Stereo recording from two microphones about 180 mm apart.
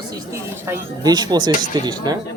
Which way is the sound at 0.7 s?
20° right (ahead or behind).